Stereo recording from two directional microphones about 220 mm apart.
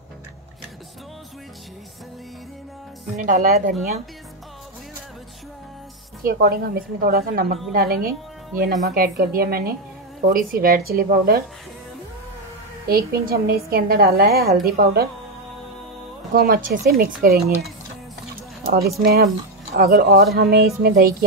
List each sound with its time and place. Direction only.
3.2 s a woman's voice: 35° right (ahead or behind)
6.2 s a woman's voice: 45° right (ahead or behind)
12.8 s a woman's voice: 45° right (ahead or behind)
16.3 s a woman's voice: 40° right (ahead or behind)
18.7 s a woman's voice: 45° right (ahead or behind)